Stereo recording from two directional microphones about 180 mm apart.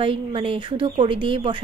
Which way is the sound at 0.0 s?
30° right (ahead or behind).